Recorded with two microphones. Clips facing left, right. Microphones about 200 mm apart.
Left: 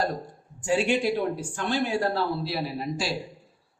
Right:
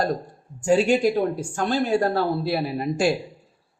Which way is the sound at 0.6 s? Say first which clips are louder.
Right 5 dB; 40° right (ahead or behind).